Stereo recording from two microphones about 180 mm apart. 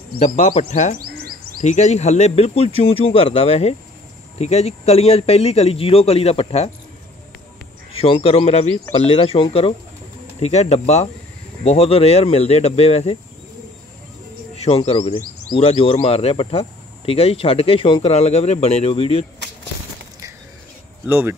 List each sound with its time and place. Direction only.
0.2 s speech: 40° left (ahead or behind)
0.9 s bird: 60° right (ahead or behind)
1.6 s speech: 40° left (ahead or behind)
7.9 s speech: 30° left (ahead or behind)
14.8 s speech: 35° left (ahead or behind)
21.1 s speech: 10° right (ahead or behind)